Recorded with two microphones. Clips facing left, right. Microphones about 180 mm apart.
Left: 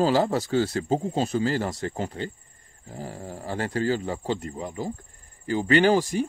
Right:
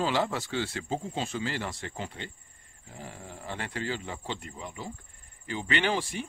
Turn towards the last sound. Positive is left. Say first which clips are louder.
# left 10 dB
turn(degrees=40)  # may be behind; listen again after turning